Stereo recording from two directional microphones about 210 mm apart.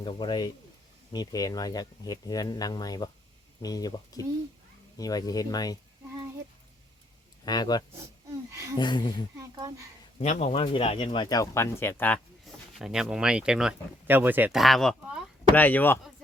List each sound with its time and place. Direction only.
0.0 s speech: 20° left (ahead or behind)
7.4 s speech: 20° left (ahead or behind)
8.4 s speech: 15° right (ahead or behind)
8.8 s speech: 20° left (ahead or behind)
9.4 s a child's voice: 15° right (ahead or behind)
10.2 s speech: 30° left (ahead or behind); by 16.0 s 10° left (ahead or behind)